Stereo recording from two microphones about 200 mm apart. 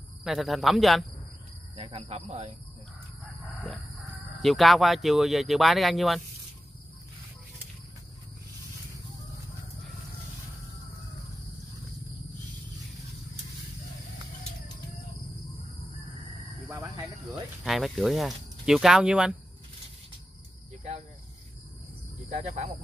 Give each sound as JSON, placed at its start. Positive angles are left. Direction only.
{"t": 0.2, "sound": "speech", "side_deg": 0}
{"t": 1.8, "sound": "speech", "side_deg": -30}
{"t": 4.4, "sound": "speech", "side_deg": 0}
{"t": 17.6, "sound": "speech", "side_deg": 0}
{"t": 22.3, "sound": "speech", "side_deg": -35}